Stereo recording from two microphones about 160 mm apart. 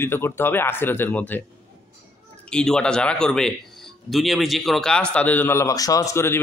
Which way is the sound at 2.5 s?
5° left (ahead or behind).